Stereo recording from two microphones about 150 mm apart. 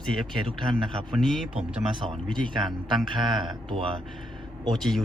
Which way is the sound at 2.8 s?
30° right (ahead or behind).